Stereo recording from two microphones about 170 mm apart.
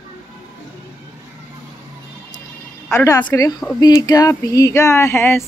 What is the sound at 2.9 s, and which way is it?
A woman's voice, 20° left (ahead or behind).